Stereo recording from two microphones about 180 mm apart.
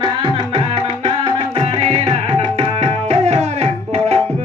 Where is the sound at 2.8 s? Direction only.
35° right (ahead or behind).